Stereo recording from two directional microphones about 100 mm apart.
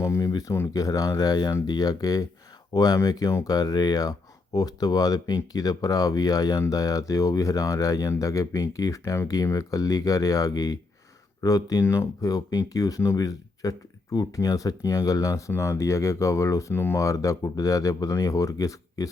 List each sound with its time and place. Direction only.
0.0 s speech: 35° left (ahead or behind)